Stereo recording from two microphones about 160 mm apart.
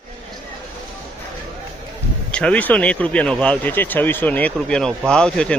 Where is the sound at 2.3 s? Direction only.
5° left (ahead or behind).